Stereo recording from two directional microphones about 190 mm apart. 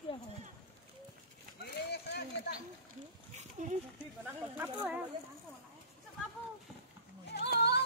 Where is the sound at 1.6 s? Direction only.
60° left (ahead or behind).